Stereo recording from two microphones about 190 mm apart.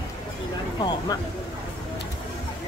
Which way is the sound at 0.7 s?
25° left (ahead or behind).